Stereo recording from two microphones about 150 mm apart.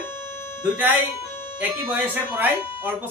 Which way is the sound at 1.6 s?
10° right (ahead or behind).